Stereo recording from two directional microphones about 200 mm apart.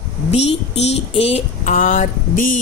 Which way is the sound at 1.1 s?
30° left (ahead or behind).